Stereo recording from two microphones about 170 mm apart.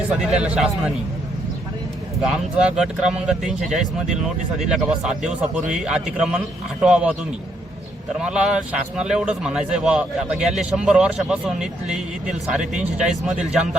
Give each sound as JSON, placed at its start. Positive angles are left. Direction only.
{"t": 0.2, "sound": "a man's voice", "side_deg": -5}
{"t": 2.2, "sound": "a man's voice", "side_deg": -5}
{"t": 8.2, "sound": "a man's voice", "side_deg": -5}